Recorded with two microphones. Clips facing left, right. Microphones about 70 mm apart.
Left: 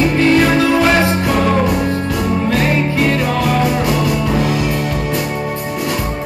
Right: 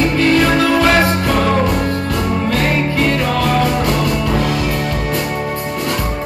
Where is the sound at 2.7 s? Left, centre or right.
Left.